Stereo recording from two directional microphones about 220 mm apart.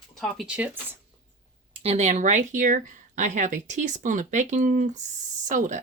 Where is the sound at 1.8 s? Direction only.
30° right (ahead or behind).